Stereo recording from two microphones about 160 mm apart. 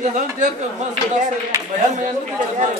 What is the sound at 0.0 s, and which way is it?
Speech, 50° right (ahead or behind).